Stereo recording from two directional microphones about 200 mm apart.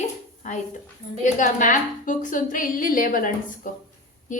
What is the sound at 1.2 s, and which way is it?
A woman's voice, 40° left (ahead or behind).